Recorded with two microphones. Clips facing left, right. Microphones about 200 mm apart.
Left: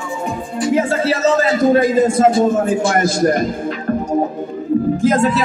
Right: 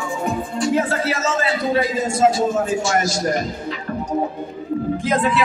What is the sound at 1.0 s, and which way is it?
A man's voice, 30° left (ahead or behind).